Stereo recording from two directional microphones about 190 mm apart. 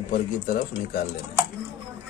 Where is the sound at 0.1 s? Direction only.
45° left (ahead or behind).